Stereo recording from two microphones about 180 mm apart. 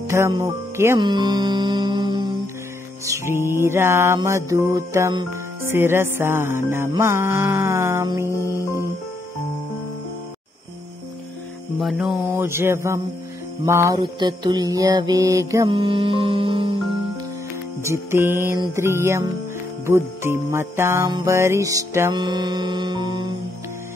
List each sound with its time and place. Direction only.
0.4 s speech: 15° right (ahead or behind)
0.9 s music: 25° right (ahead or behind)
3.1 s music: 15° right (ahead or behind)
11.8 s music: centre (ahead or behind); by 15.7 s 20° right (ahead or behind)
15.7 s music: 30° right (ahead or behind)
17.8 s music: 15° right (ahead or behind)